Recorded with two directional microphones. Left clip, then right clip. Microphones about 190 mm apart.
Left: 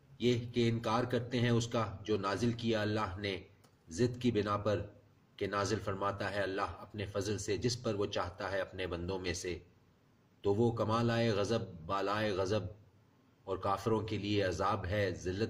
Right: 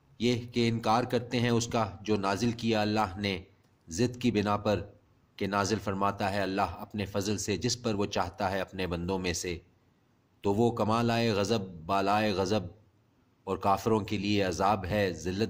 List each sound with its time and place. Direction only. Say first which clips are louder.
0.2 s a man's voice: right 3 dB; 50° right (ahead or behind)